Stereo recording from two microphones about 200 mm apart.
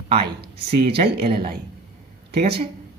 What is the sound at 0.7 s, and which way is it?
Speech, 55° right (ahead or behind).